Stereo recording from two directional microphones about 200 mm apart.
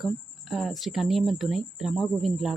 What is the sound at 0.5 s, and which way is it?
Speech, centre (ahead or behind).